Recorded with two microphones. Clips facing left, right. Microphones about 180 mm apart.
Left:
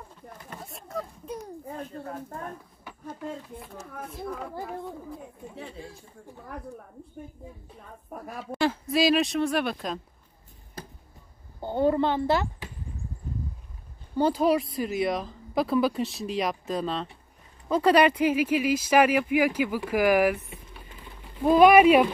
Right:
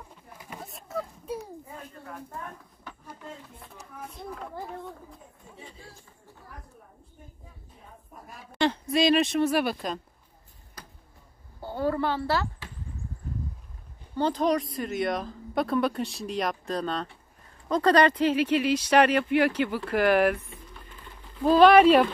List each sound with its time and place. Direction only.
0.4 s a sound: 5° right (ahead or behind)
2.0 s speech: 40° left (ahead or behind)
2.9 s a sound: 10° left (ahead or behind)
4.2 s speech: 5° left (ahead or behind)
8.1 s a woman's voice: 65° left (ahead or behind)
8.5 s speech: 5° left (ahead or behind)
10.8 s basketball bounce: 25° left (ahead or behind)
11.6 s speech: 20° left (ahead or behind)
14.1 s speech: 10° left (ahead or behind)